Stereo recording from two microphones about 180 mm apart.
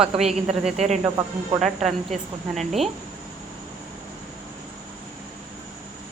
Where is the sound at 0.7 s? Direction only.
40° right (ahead or behind).